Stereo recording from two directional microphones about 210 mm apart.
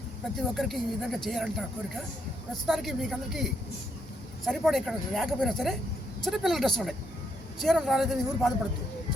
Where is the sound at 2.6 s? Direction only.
Centre (ahead or behind).